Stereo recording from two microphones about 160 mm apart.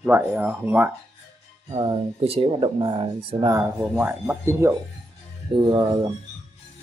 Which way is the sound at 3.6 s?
10° right (ahead or behind).